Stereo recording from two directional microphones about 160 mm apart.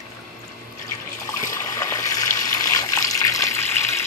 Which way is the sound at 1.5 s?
20° left (ahead or behind).